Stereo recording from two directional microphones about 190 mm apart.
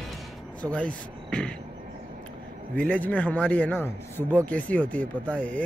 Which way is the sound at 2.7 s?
5° left (ahead or behind).